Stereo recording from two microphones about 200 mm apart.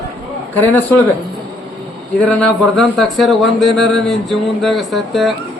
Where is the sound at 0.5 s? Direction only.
10° left (ahead or behind).